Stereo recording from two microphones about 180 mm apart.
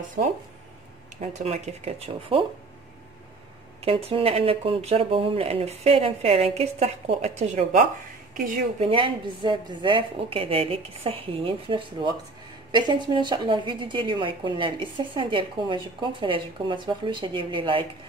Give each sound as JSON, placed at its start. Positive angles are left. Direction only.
{"t": 0.2, "sound": "speech", "side_deg": -30}
{"t": 3.8, "sound": "speech", "side_deg": -30}
{"t": 8.7, "sound": "a woman's voice", "side_deg": -30}